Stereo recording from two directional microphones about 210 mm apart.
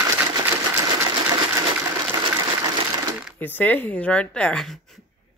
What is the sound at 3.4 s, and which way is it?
A woman's voice, 10° left (ahead or behind).